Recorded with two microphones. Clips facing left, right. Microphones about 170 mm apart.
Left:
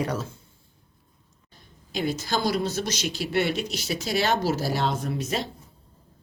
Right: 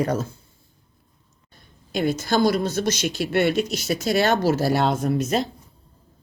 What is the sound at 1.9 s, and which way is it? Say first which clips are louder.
Speech: right 5 dB; 50° right (ahead or behind).